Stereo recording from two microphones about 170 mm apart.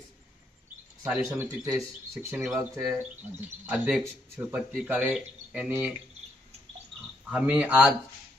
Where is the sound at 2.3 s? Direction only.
Centre (ahead or behind).